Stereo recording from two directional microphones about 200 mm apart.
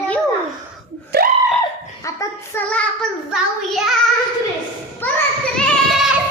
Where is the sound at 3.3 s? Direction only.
Centre (ahead or behind).